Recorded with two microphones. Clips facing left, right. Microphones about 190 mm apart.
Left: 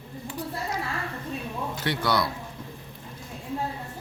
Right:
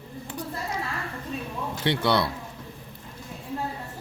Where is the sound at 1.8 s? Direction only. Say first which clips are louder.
Right 3 dB; 25° right (ahead or behind).